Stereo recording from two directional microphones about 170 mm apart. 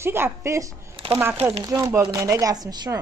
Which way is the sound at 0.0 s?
15° right (ahead or behind).